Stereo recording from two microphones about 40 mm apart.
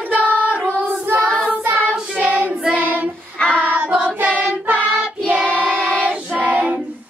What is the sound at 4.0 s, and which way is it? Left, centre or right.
Singing, right.